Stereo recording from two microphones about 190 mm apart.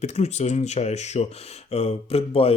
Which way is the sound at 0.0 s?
35° left (ahead or behind).